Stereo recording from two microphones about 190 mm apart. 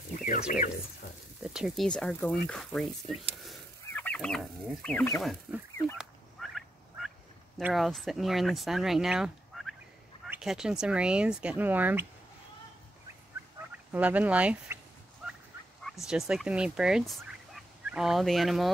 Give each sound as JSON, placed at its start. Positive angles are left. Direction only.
{"t": 0.3, "sound": "speech", "side_deg": 45}
{"t": 1.4, "sound": "speech", "side_deg": -5}
{"t": 5.2, "sound": "speech", "side_deg": 0}
{"t": 5.9, "sound": "fowl", "side_deg": 0}
{"t": 7.6, "sound": "speech", "side_deg": 0}
{"t": 13.9, "sound": "speech", "side_deg": -10}
{"t": 15.8, "sound": "speech", "side_deg": 0}
{"t": 17.6, "sound": "fowl", "side_deg": 0}